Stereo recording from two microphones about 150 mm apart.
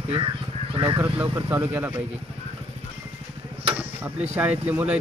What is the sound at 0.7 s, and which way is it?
Speech, 30° right (ahead or behind).